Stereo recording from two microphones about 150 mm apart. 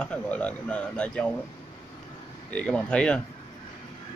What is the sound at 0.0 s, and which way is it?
Speech, 10° left (ahead or behind).